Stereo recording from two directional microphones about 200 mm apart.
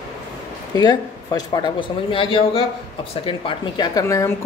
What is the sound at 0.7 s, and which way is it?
A man's voice, 20° left (ahead or behind).